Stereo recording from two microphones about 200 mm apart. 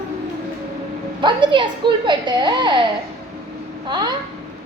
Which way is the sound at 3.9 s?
20° right (ahead or behind).